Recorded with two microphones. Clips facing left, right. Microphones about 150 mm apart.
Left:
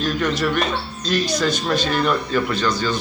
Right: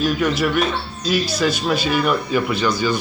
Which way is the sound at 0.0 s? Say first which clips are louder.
Right 2 dB; 10° right (ahead or behind).